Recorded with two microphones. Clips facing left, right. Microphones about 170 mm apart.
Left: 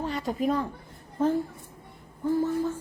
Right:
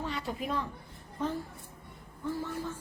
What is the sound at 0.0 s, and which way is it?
Speech, 40° left (ahead or behind).